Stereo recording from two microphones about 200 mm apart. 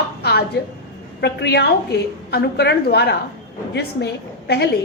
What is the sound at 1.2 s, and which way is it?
A woman's voice, 60° left (ahead or behind).